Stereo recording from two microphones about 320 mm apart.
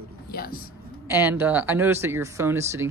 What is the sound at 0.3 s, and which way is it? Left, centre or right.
Music, left.